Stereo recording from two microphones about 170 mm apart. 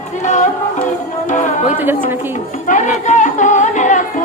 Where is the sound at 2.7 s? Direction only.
45° left (ahead or behind).